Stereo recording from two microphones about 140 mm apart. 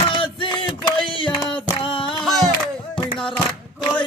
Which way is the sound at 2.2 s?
Centre (ahead or behind).